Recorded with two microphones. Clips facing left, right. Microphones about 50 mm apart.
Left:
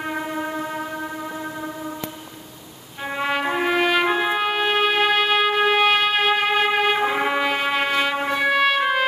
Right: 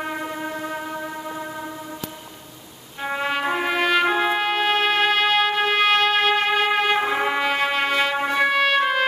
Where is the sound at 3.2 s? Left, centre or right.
Centre.